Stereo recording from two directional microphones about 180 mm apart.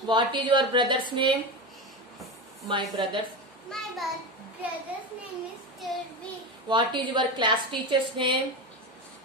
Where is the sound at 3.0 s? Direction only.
30° right (ahead or behind).